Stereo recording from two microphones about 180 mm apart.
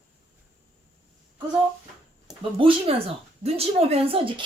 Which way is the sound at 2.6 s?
30° right (ahead or behind).